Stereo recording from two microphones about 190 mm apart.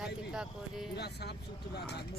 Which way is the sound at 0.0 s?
5° right (ahead or behind).